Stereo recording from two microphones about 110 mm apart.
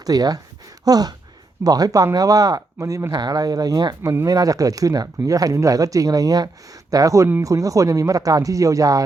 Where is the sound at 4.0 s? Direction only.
25° right (ahead or behind).